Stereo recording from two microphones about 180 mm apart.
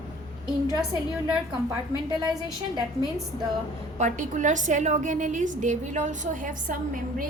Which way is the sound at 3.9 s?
45° right (ahead or behind).